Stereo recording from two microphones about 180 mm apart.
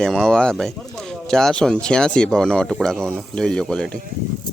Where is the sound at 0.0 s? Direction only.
5° left (ahead or behind).